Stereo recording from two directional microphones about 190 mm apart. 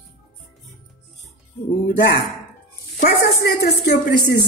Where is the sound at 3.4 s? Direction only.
60° left (ahead or behind).